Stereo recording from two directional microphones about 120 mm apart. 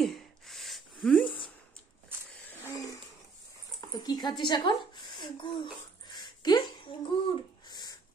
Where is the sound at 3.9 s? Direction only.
35° left (ahead or behind).